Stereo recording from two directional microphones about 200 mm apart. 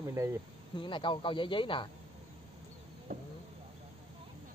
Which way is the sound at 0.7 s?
25° left (ahead or behind).